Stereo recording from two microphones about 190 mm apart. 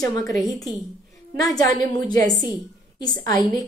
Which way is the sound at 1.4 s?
20° left (ahead or behind).